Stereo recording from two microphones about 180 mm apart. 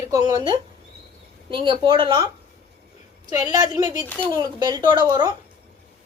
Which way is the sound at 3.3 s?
20° right (ahead or behind).